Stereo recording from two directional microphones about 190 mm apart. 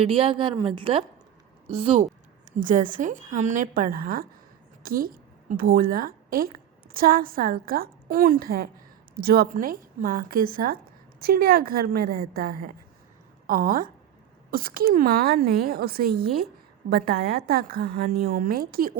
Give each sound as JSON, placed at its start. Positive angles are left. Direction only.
{"t": 0.0, "sound": "a woman's voice", "side_deg": -30}
{"t": 2.6, "sound": "a woman's voice", "side_deg": -45}